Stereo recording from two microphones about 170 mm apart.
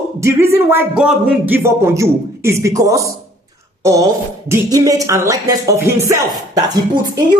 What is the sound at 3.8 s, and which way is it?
Speech, 20° right (ahead or behind).